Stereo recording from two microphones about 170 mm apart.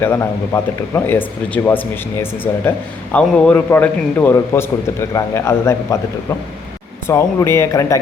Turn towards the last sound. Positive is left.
turn(degrees=20)  # may be behind; listen again after turning